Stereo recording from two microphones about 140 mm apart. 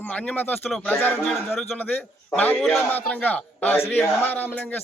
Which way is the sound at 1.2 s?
Centre (ahead or behind).